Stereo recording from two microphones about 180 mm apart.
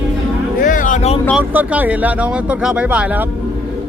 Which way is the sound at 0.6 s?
50° left (ahead or behind).